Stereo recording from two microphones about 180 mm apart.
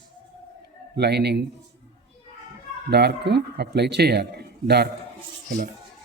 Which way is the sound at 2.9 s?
65° right (ahead or behind).